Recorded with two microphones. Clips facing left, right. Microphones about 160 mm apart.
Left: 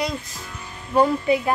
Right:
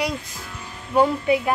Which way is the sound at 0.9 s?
5° right (ahead or behind).